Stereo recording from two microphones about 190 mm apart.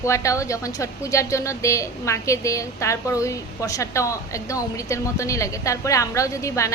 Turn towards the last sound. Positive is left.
turn(degrees=15)  # may be behind; listen again after turning